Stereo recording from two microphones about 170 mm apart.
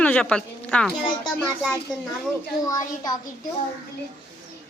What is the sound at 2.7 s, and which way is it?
Speech, 20° left (ahead or behind).